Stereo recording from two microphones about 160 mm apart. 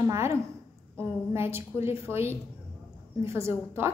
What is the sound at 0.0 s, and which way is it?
A woman's voice, 15° right (ahead or behind).